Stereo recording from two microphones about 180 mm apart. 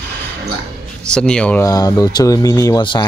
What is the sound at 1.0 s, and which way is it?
Speech, 5° left (ahead or behind).